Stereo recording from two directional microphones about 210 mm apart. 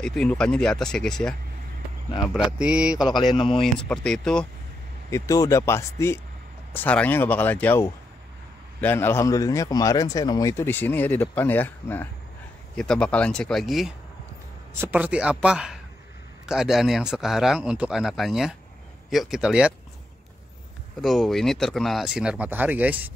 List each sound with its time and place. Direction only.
0.0 s a man's voice: 5° left (ahead or behind)
2.3 s a man's voice: 5° right (ahead or behind)
3.3 s speech: 25° left (ahead or behind)
3.6 s a man's voice: 5° left (ahead or behind)
5.1 s a man's voice: 15° left (ahead or behind); by 19.7 s 5° right (ahead or behind)
21.0 s a man's voice: centre (ahead or behind)